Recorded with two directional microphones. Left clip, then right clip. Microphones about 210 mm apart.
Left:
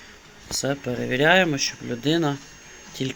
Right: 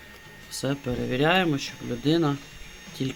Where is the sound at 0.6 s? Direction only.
5° right (ahead or behind).